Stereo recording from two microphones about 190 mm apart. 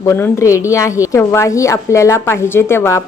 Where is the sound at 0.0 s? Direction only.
15° left (ahead or behind).